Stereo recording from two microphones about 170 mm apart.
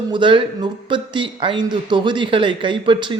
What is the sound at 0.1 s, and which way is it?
Speech, 30° right (ahead or behind).